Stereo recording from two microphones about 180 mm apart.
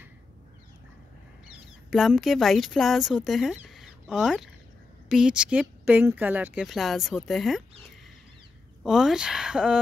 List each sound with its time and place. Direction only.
1.9 s speech: centre (ahead or behind)
8.8 s speech: 5° right (ahead or behind)